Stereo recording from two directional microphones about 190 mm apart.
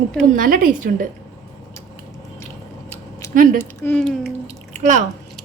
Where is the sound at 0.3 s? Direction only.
45° right (ahead or behind).